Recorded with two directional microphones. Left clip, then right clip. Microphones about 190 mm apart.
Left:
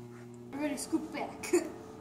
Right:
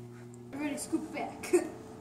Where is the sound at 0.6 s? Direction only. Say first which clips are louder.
Left 1 dB; 15° left (ahead or behind).